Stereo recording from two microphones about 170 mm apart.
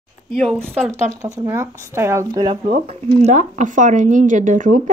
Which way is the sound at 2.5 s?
35° right (ahead or behind).